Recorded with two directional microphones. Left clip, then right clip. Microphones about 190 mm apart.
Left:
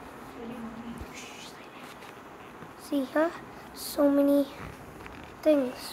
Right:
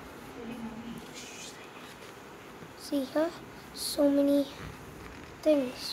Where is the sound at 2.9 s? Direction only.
10° left (ahead or behind).